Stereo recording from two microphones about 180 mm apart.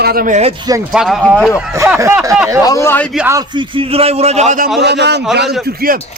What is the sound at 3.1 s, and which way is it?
Speech, 15° right (ahead or behind).